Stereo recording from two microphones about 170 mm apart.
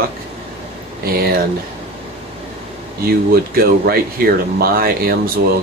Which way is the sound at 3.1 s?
65° right (ahead or behind).